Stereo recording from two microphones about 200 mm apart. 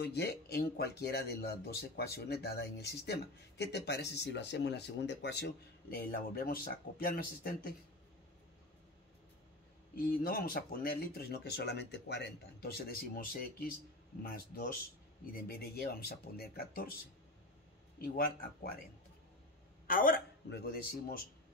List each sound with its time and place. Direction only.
0.0 s speech: 55° left (ahead or behind)
9.9 s speech: 50° left (ahead or behind)
18.0 s speech: 50° left (ahead or behind)
19.9 s speech: 45° left (ahead or behind)